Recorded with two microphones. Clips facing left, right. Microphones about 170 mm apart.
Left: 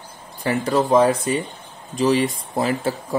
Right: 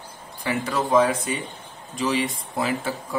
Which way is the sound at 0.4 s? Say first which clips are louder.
Left 5 dB; 40° left (ahead or behind).